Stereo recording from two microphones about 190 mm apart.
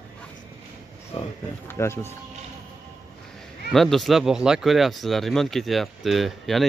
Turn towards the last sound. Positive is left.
turn(degrees=0)  # may be behind; listen again after turning